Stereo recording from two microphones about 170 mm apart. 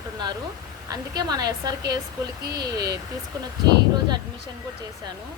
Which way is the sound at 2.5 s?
75° right (ahead or behind).